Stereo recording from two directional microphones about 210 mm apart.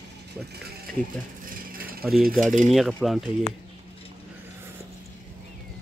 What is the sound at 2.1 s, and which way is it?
Speech, centre (ahead or behind).